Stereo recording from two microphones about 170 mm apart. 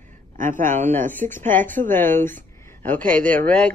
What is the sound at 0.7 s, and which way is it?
A woman's voice, 10° left (ahead or behind).